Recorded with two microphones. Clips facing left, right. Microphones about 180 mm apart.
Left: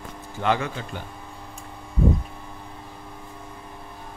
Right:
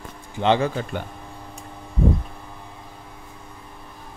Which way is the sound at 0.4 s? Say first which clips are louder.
Right 4 dB; 25° right (ahead or behind).